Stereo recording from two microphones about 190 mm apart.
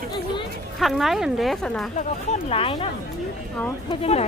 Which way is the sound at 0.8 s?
Centre (ahead or behind).